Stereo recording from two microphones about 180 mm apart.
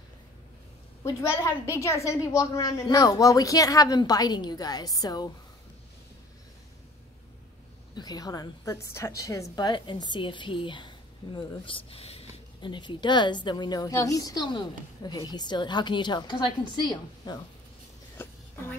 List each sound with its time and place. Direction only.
1.0 s a woman's voice: 15° left (ahead or behind)
7.9 s a woman's voice: 20° left (ahead or behind)
18.1 s a sound: 10° left (ahead or behind)